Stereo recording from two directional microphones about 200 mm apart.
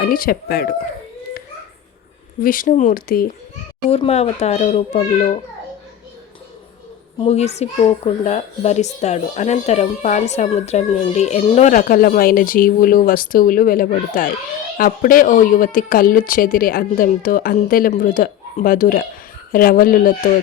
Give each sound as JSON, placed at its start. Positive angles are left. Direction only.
{"t": 0.0, "sound": "a woman's voice", "side_deg": 45}
{"t": 2.4, "sound": "a woman's voice", "side_deg": 45}
{"t": 3.8, "sound": "speech", "side_deg": 30}
{"t": 7.2, "sound": "a woman's voice", "side_deg": 30}